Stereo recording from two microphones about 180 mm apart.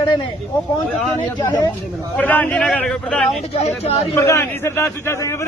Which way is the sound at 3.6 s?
35° left (ahead or behind).